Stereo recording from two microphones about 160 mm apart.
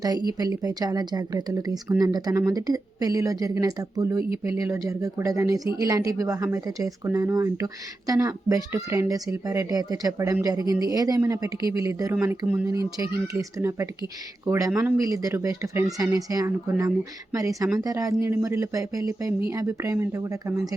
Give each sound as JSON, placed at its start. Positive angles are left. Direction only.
{"t": 0.0, "sound": "speech", "side_deg": -25}
{"t": 13.6, "sound": "speech", "side_deg": -15}